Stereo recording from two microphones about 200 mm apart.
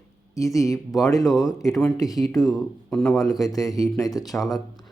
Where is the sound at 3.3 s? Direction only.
15° left (ahead or behind).